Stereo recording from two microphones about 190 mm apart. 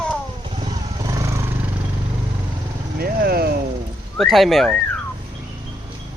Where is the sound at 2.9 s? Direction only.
50° right (ahead or behind).